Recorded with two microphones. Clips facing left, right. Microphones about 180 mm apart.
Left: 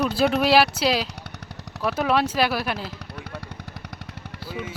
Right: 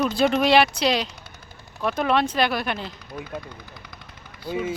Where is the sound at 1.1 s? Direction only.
70° left (ahead or behind).